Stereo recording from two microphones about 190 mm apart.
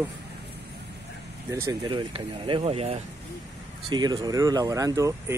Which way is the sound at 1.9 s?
25° right (ahead or behind).